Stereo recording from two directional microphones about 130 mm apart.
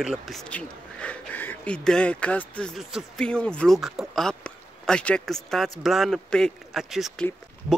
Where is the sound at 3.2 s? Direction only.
10° left (ahead or behind).